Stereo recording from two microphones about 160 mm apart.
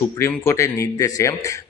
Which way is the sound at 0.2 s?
15° left (ahead or behind).